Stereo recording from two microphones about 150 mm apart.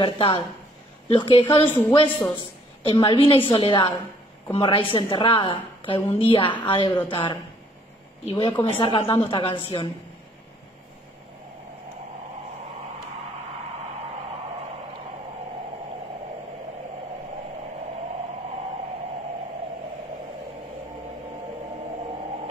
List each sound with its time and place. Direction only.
0.0 s a woman's voice: 35° left (ahead or behind)
1.7 s speech: 15° left (ahead or behind)
2.0 s a woman's voice: 35° left (ahead or behind)